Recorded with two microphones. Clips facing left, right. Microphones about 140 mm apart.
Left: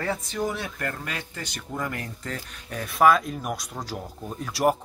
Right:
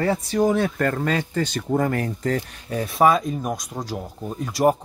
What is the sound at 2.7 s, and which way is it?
Speech, 30° right (ahead or behind).